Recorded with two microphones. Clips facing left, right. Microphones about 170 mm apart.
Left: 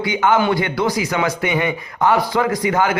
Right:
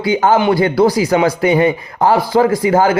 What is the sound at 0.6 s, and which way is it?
A man's voice, 35° right (ahead or behind).